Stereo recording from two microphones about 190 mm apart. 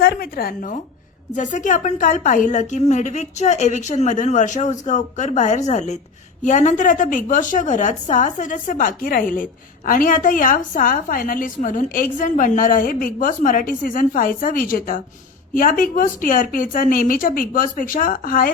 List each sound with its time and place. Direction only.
0.0 s a woman's voice: 50° left (ahead or behind)